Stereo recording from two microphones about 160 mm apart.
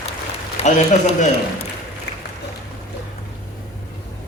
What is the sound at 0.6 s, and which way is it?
Speech, 40° left (ahead or behind).